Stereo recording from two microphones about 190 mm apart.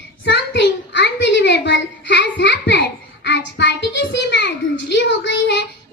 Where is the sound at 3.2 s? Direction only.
60° left (ahead or behind).